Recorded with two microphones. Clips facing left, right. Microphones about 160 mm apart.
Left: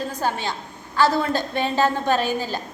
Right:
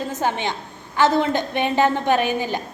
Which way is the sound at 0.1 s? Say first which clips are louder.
Right 2 dB; 20° right (ahead or behind).